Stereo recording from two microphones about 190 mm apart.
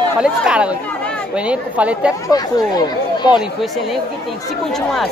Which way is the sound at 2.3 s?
20° left (ahead or behind).